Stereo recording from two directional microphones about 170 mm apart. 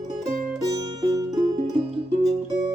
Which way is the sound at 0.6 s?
20° right (ahead or behind).